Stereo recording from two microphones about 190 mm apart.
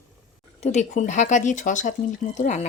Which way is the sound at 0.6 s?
40° left (ahead or behind).